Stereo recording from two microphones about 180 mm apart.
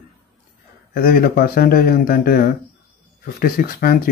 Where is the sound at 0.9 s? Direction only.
55° left (ahead or behind).